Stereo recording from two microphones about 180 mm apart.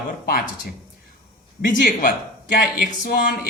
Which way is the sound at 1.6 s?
50° left (ahead or behind).